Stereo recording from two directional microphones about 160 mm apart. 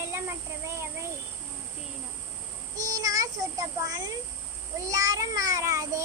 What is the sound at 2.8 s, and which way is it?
A child's voice, 20° right (ahead or behind).